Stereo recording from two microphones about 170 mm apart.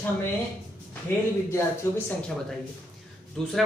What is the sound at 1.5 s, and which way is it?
Speech, 15° left (ahead or behind).